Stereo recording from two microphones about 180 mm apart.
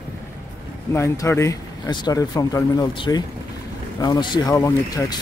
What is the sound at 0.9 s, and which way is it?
Speech, 15° left (ahead or behind).